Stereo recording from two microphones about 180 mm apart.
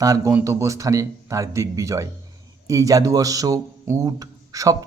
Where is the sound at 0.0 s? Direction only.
20° right (ahead or behind).